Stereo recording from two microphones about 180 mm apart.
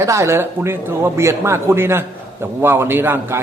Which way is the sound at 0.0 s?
15° right (ahead or behind).